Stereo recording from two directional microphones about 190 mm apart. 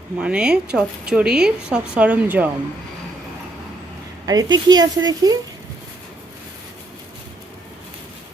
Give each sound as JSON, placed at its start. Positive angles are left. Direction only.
{"t": 0.2, "sound": "a woman's voice", "side_deg": -5}
{"t": 4.3, "sound": "speech", "side_deg": -20}